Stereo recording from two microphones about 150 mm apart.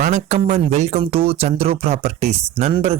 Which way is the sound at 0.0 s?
50° right (ahead or behind).